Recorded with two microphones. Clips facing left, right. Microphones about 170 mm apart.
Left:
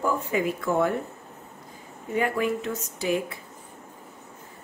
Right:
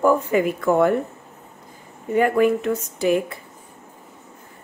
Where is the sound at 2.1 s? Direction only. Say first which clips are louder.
Right 8 dB; 55° right (ahead or behind).